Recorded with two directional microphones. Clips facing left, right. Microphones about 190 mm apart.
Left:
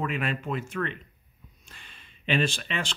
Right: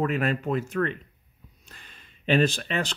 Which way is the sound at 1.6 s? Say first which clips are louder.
Right 1 dB; 40° right (ahead or behind).